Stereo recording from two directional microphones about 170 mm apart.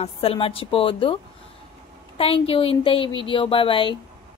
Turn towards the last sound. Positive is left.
turn(degrees=30)  # may be behind; listen again after turning